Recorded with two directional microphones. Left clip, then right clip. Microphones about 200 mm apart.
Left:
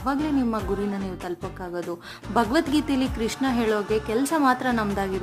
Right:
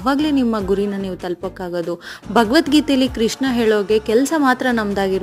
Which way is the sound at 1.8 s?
25° right (ahead or behind).